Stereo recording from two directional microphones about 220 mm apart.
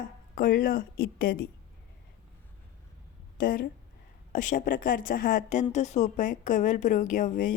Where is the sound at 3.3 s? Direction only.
40° left (ahead or behind).